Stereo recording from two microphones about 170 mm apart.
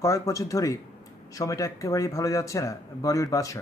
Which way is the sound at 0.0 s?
20° left (ahead or behind).